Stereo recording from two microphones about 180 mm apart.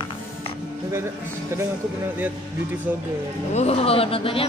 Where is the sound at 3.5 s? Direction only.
35° left (ahead or behind).